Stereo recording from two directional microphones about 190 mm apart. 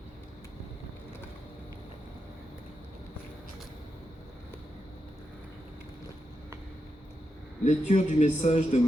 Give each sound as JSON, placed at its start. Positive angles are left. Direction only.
{"t": 7.6, "sound": "a man's voice", "side_deg": 40}